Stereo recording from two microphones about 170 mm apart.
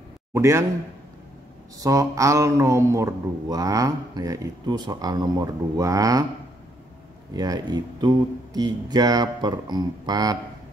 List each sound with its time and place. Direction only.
0.3 s speech: 15° right (ahead or behind)
1.8 s speech: 20° right (ahead or behind)
7.3 s speech: 20° right (ahead or behind)